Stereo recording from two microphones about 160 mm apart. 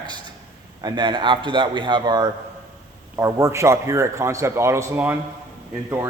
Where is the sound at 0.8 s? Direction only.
25° right (ahead or behind).